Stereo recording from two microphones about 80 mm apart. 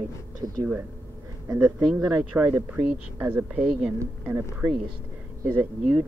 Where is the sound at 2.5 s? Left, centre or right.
Centre.